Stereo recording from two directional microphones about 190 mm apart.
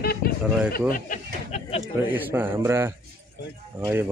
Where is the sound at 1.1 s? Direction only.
35° left (ahead or behind).